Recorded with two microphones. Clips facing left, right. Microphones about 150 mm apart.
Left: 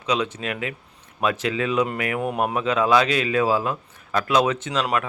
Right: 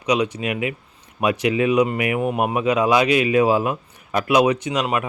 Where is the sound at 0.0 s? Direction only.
15° right (ahead or behind).